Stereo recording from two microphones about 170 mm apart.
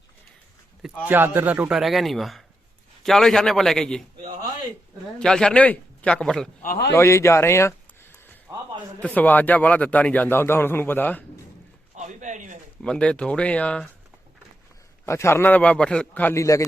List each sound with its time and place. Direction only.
0.8 s a man's voice: 5° right (ahead or behind)
5.2 s a man's voice: 5° left (ahead or behind)
6.6 s a man's voice: 50° left (ahead or behind)
6.9 s a man's voice: 15° left (ahead or behind)
8.4 s a sound: 25° right (ahead or behind)
9.0 s a man's voice: 10° left (ahead or behind)
11.9 s a sound: 45° right (ahead or behind)
12.8 s a man's voice: 5° left (ahead or behind)
15.0 s a man's voice: 15° left (ahead or behind)